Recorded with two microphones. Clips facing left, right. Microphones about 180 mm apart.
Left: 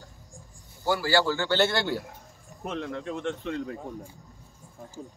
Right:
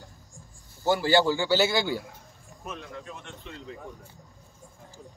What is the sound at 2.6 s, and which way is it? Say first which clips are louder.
Speech: left 7 dB; 65° left (ahead or behind).